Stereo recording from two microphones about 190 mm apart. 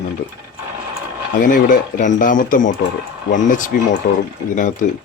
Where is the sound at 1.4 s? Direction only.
45° left (ahead or behind).